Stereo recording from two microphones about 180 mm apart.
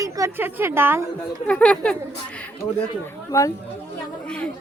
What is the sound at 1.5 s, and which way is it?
Speech, 5° left (ahead or behind).